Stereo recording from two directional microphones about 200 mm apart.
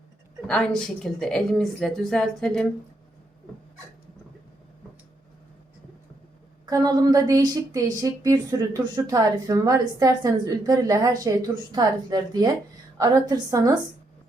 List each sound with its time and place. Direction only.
0.4 s a woman's voice: 5° left (ahead or behind)
6.7 s a woman's voice: 20° right (ahead or behind)